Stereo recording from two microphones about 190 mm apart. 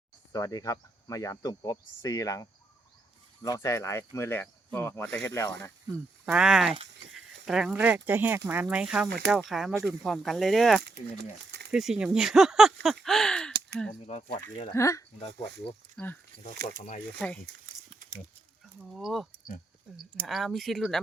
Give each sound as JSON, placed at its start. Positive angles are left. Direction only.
{"t": 0.3, "sound": "speech", "side_deg": 20}
{"t": 6.2, "sound": "speech", "side_deg": -5}
{"t": 14.1, "sound": "speech", "side_deg": 40}
{"t": 14.7, "sound": "speech", "side_deg": 15}
{"t": 16.3, "sound": "speech", "side_deg": 60}
{"t": 17.2, "sound": "speech", "side_deg": 5}
{"t": 18.9, "sound": "speech", "side_deg": 0}